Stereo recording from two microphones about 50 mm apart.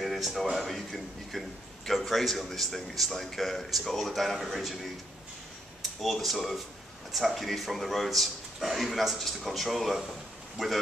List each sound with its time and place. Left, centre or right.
0.0 s a man's voice: centre
5.8 s a man's voice: centre